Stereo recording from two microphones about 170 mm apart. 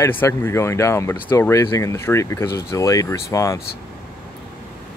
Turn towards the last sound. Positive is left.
turn(degrees=20)  # may be behind; listen again after turning